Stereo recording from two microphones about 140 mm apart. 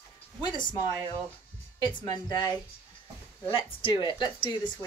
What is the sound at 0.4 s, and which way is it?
Speech, 30° left (ahead or behind).